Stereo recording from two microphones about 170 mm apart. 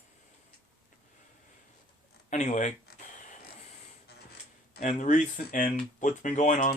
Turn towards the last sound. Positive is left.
turn(degrees=45)  # may be behind; listen again after turning